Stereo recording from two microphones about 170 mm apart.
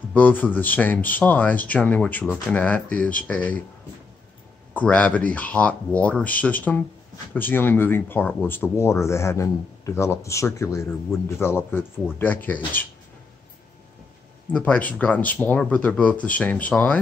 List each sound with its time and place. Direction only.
0.1 s speech: 10° left (ahead or behind)
4.7 s speech: 10° left (ahead or behind)
14.5 s speech: 10° left (ahead or behind)